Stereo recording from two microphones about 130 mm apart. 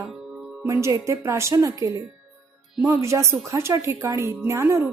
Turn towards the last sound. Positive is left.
turn(degrees=-20)  # may be behind; listen again after turning